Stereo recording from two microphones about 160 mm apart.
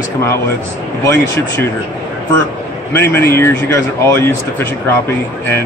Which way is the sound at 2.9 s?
10° left (ahead or behind).